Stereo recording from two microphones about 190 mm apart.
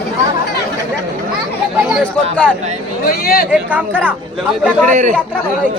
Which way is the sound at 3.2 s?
50° left (ahead or behind).